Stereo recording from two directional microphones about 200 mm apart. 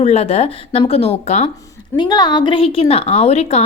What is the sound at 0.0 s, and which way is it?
Speech, 30° left (ahead or behind).